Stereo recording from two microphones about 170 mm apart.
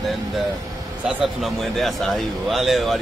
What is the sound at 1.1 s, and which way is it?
A man's voice, centre (ahead or behind).